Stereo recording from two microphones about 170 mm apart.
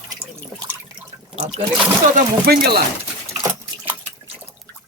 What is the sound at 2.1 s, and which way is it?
Speech, 65° right (ahead or behind).